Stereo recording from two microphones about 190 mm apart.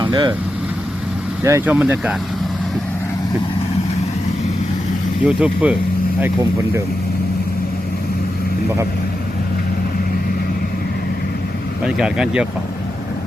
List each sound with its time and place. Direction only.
0.0 s speech: 25° right (ahead or behind)
1.5 s speech: 10° right (ahead or behind)
5.2 s speech: 5° right (ahead or behind)
11.9 s speech: 5° right (ahead or behind)